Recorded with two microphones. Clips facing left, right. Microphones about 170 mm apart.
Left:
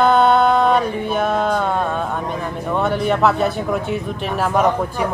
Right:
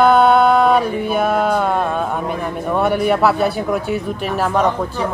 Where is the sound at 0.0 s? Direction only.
5° right (ahead or behind).